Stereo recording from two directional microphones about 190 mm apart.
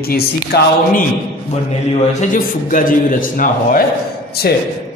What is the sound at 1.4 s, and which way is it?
A man's voice, 40° left (ahead or behind).